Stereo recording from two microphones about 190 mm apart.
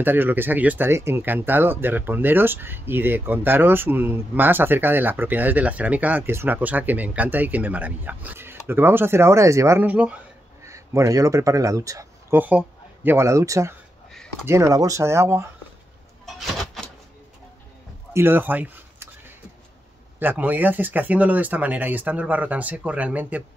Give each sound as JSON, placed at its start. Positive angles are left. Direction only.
{"t": 0.0, "sound": "speech", "side_deg": -10}
{"t": 16.3, "sound": "a sound", "side_deg": 0}
{"t": 18.1, "sound": "speech", "side_deg": -10}
{"t": 20.2, "sound": "speech", "side_deg": -10}